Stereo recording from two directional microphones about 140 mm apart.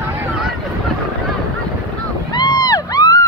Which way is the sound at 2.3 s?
30° left (ahead or behind).